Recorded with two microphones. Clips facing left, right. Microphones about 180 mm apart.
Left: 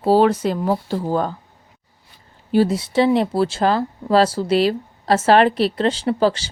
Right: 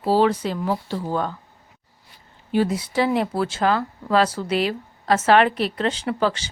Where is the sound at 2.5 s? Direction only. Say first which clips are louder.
Left 4 dB; 30° left (ahead or behind).